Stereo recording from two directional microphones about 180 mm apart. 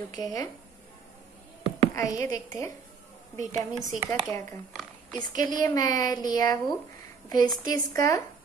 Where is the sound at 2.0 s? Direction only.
20° left (ahead or behind).